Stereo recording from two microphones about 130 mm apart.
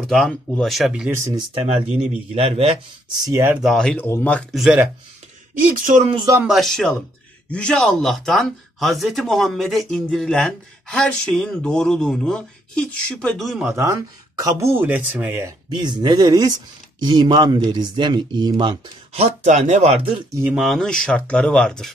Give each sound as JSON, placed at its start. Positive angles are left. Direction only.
{"t": 0.0, "sound": "speech", "side_deg": 0}
{"t": 1.1, "sound": "speech", "side_deg": -25}
{"t": 1.9, "sound": "a man's voice", "side_deg": -50}
{"t": 3.3, "sound": "speech", "side_deg": -25}
{"t": 3.6, "sound": "speech", "side_deg": 5}
{"t": 4.0, "sound": "speech", "side_deg": 15}
{"t": 5.8, "sound": "speech", "side_deg": -80}
{"t": 6.4, "sound": "speech", "side_deg": 0}
{"t": 13.7, "sound": "speech", "side_deg": -25}
{"t": 15.7, "sound": "speech", "side_deg": -35}
{"t": 19.1, "sound": "speech", "side_deg": -60}
{"t": 20.5, "sound": "speech", "side_deg": 0}